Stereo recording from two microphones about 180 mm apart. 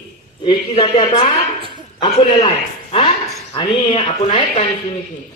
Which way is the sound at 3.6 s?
25° left (ahead or behind).